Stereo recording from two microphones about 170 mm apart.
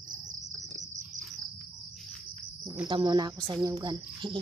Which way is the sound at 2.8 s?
25° right (ahead or behind).